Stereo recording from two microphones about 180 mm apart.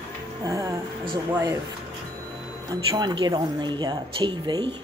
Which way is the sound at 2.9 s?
25° right (ahead or behind).